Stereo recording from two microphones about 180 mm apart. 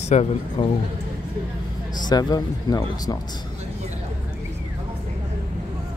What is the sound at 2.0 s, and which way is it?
Speech, 25° left (ahead or behind).